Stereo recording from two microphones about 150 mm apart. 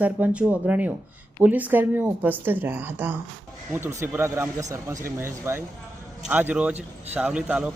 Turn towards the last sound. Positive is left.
turn(degrees=-5)  # may be behind; listen again after turning